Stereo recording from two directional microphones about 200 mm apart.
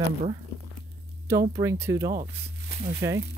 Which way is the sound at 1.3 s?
15° right (ahead or behind).